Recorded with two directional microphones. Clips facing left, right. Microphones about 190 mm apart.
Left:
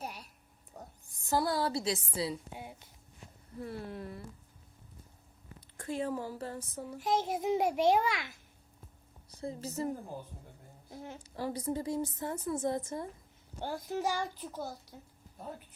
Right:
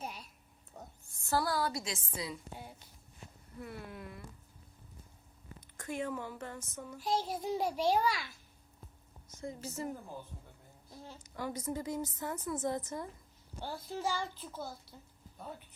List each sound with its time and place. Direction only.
0.0 s a sound: 10° left (ahead or behind)
0.8 s a woman's voice: 15° left (ahead or behind); by 2.4 s 35° left (ahead or behind)
3.6 s a woman's voice: 30° left (ahead or behind)
5.5 s speech: 30° left (ahead or behind)
6.9 s speech: 20° left (ahead or behind)
9.4 s a woman's voice: 35° left (ahead or behind)
10.8 s a sound: 15° left (ahead or behind)
11.2 s a child's voice: 30° left (ahead or behind)